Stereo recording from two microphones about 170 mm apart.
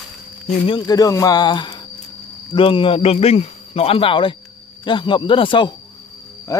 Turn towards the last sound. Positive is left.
turn(degrees=20)  # may be behind; listen again after turning